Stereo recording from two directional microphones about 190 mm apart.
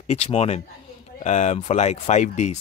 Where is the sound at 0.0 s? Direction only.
35° left (ahead or behind).